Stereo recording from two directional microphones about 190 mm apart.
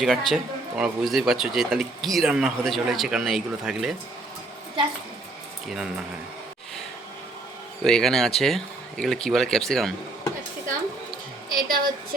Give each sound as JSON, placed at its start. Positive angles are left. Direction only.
{"t": 0.0, "sound": "speech", "side_deg": 0}
{"t": 7.9, "sound": "speech", "side_deg": 0}
{"t": 11.4, "sound": "a woman's voice", "side_deg": -50}